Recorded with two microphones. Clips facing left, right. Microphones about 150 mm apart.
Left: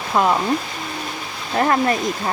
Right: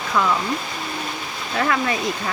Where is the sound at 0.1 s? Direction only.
50° left (ahead or behind).